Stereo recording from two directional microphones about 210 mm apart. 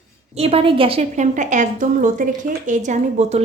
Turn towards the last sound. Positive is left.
turn(degrees=-35)  # may be behind; listen again after turning